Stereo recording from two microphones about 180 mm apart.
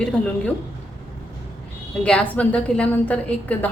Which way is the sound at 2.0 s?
5° left (ahead or behind).